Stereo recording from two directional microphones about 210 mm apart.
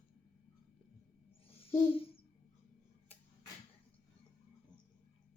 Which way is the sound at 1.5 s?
25° left (ahead or behind).